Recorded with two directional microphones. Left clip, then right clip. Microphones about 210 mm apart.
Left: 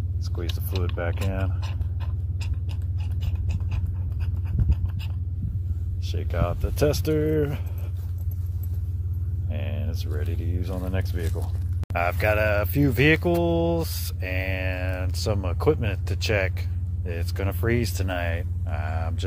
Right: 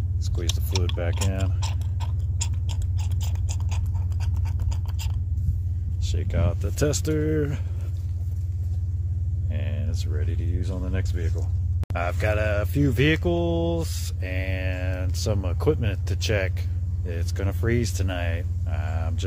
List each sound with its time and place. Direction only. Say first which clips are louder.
0.2 s speech: right 4 dB; 15° right (ahead or behind)
1.6 s a sound: right 4 dB; 5° right (ahead or behind)
4.5 s scratch: left 2 dB; 5° right (ahead or behind)
6.0 s speech: left 2 dB; 10° right (ahead or behind)
9.5 s speech: left 2 dB; centre (ahead or behind)